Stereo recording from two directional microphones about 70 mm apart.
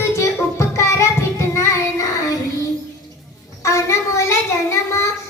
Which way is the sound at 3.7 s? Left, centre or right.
Left.